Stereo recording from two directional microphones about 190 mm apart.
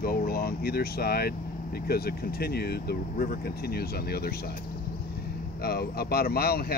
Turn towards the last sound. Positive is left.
turn(degrees=55)  # may be behind; listen again after turning